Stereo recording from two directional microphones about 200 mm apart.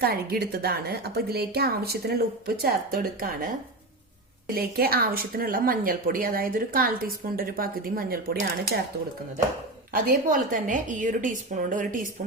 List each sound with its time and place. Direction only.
0.0 s a woman's voice: 50° right (ahead or behind)
4.5 s a woman's voice: 50° right (ahead or behind)
9.9 s a woman's voice: 45° right (ahead or behind)